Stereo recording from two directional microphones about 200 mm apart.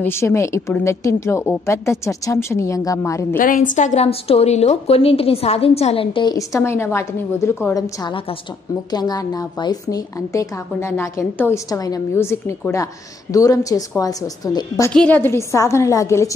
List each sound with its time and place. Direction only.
0.0 s a woman's voice: 15° left (ahead or behind)
3.3 s a woman's voice: 45° left (ahead or behind); by 14.9 s 20° left (ahead or behind)
14.9 s a woman's voice: 5° left (ahead or behind)